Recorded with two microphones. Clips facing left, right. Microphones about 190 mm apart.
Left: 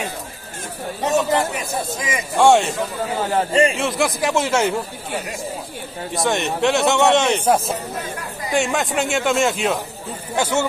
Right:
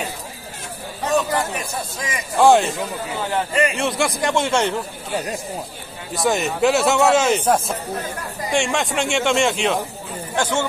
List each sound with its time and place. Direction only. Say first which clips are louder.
1.0 s speech: left 2 dB; 25° left (ahead or behind)
2.3 s a man's voice: even; centre (ahead or behind)
3.7 s a man's voice: left 1 dB; centre (ahead or behind)
6.1 s a man's voice: right 1 dB; centre (ahead or behind)
8.5 s a man's voice: left 1 dB; 5° left (ahead or behind)